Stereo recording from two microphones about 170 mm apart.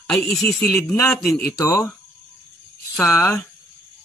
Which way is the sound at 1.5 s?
15° left (ahead or behind).